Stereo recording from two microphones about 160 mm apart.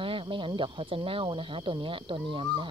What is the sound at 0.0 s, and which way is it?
Speech, 35° right (ahead or behind).